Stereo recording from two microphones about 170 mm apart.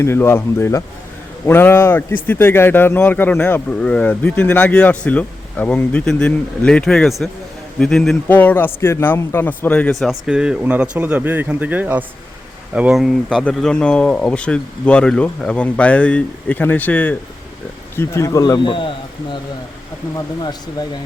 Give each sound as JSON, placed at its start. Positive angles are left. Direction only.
{"t": 0.0, "sound": "a man's voice", "side_deg": 15}